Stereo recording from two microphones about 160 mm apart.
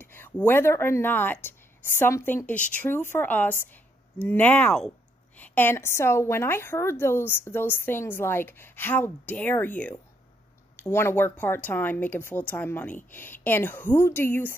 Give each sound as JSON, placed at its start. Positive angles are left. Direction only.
{"t": 0.0, "sound": "a sound", "side_deg": 15}
{"t": 0.5, "sound": "a woman's voice", "side_deg": 15}
{"t": 10.8, "sound": "a woman's voice", "side_deg": 15}